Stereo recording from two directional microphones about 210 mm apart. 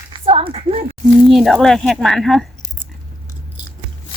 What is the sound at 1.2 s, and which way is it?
Speech, centre (ahead or behind).